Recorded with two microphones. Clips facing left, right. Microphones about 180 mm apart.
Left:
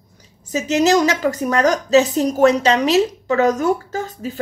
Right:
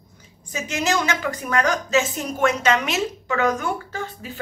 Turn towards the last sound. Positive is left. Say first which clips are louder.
# left 6 dB
turn(degrees=40)  # may be behind; listen again after turning